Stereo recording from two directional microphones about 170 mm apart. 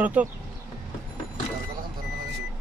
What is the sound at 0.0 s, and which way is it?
Speech, 10° right (ahead or behind).